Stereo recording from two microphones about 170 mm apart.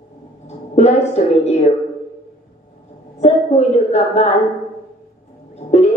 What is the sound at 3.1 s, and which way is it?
A woman's voice, 40° left (ahead or behind).